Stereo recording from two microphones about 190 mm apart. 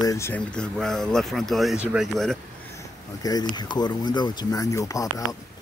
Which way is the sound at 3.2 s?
20° left (ahead or behind).